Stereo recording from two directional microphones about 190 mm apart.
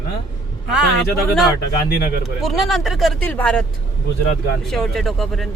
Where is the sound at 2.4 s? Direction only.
Centre (ahead or behind).